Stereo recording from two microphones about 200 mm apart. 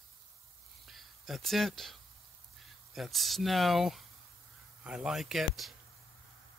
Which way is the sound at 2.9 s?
Centre (ahead or behind).